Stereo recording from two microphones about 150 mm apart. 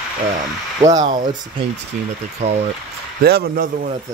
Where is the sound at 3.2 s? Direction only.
90° right.